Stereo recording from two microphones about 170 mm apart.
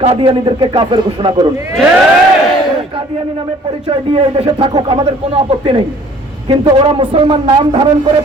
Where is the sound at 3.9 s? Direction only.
30° right (ahead or behind).